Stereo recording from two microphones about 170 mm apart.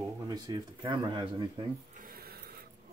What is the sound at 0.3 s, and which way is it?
Speech, 25° right (ahead or behind).